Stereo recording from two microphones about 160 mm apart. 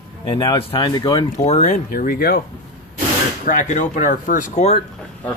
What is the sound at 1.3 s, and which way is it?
Speech, 45° left (ahead or behind).